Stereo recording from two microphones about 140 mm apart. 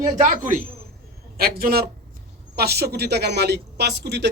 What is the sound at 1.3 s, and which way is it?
Speech, 90° right.